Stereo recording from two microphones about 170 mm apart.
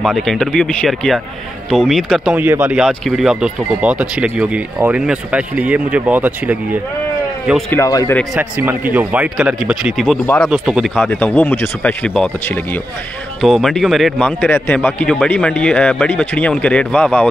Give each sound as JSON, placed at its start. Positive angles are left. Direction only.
{"t": 0.0, "sound": "speech", "side_deg": 0}
{"t": 7.7, "sound": "a man's voice", "side_deg": 20}
{"t": 8.4, "sound": "speech", "side_deg": -10}
{"t": 11.1, "sound": "a man's voice", "side_deg": 10}